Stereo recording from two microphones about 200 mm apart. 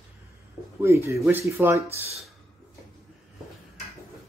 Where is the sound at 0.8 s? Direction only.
15° right (ahead or behind).